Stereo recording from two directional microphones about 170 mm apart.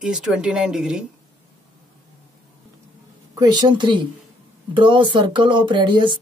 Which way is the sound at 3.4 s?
25° right (ahead or behind).